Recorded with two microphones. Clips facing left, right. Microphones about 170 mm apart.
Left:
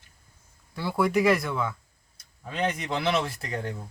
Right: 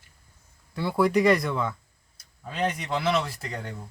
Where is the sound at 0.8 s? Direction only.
Centre (ahead or behind).